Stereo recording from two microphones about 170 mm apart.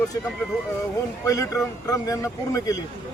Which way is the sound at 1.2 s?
20° left (ahead or behind).